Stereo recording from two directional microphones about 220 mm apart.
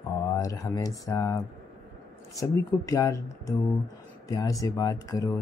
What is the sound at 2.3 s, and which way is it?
Speech, 15° left (ahead or behind).